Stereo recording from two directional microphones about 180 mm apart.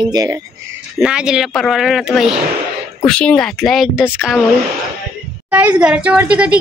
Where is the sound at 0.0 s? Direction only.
20° right (ahead or behind).